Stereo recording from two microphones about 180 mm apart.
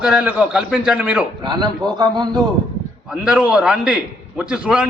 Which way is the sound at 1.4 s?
25° right (ahead or behind).